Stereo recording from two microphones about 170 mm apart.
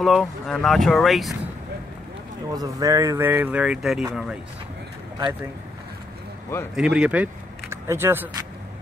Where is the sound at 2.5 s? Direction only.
20° right (ahead or behind); by 4.0 s 5° right (ahead or behind).